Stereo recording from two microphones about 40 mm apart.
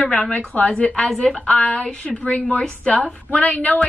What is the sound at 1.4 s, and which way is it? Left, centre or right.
A woman's voice, left.